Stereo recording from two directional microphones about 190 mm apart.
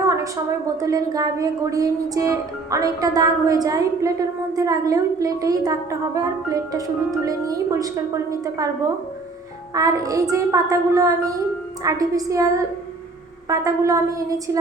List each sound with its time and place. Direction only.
0.8 s a woman's voice: 20° right (ahead or behind)
9.7 s speech: 20° right (ahead or behind)
13.5 s speech: 15° right (ahead or behind)